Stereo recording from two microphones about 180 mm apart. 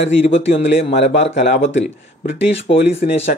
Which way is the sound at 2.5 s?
35° left (ahead or behind).